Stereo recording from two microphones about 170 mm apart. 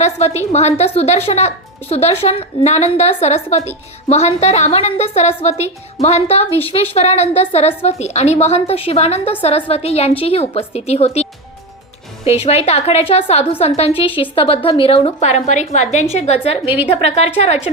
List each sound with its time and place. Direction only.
0.0 s a woman's voice: 40° left (ahead or behind)
16.6 s a woman's voice: 10° right (ahead or behind)
16.9 s a woman's voice: 35° left (ahead or behind)